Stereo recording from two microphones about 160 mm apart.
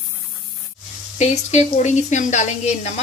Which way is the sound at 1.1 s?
45° left (ahead or behind).